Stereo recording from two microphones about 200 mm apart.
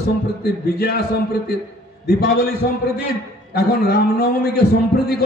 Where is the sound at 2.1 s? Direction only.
50° left (ahead or behind).